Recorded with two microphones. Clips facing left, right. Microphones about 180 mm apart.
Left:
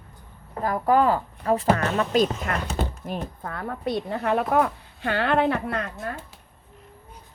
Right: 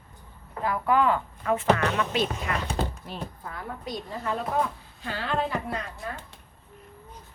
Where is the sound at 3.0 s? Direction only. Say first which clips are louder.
Left 5 dB; 55° left (ahead or behind).